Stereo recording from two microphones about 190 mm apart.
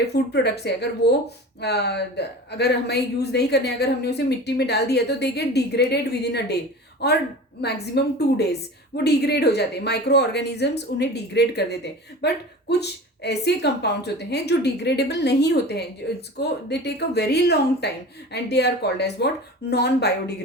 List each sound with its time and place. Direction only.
0.1 s a woman's voice: 60° left (ahead or behind)